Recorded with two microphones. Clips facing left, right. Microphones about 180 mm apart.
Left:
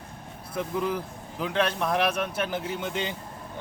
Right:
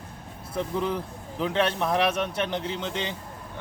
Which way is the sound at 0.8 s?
Centre (ahead or behind).